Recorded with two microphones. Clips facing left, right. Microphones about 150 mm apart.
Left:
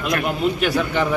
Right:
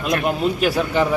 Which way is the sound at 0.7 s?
5° right (ahead or behind).